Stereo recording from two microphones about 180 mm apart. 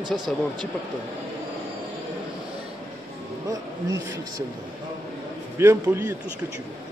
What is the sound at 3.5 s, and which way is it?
Speech, 20° right (ahead or behind).